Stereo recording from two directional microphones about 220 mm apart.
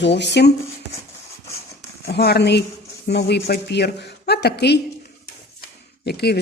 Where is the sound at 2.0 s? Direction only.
45° left (ahead or behind).